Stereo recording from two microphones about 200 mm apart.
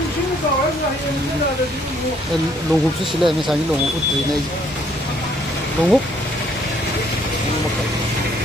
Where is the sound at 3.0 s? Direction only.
Centre (ahead or behind).